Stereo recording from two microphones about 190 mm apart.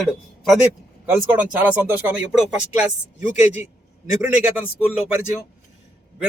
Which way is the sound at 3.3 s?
40° left (ahead or behind).